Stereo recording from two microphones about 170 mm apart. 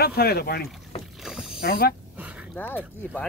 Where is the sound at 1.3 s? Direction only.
5° right (ahead or behind).